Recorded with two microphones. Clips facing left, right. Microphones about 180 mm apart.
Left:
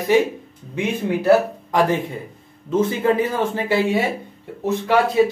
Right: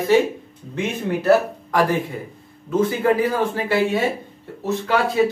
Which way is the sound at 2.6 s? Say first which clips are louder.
Even; 25° left (ahead or behind).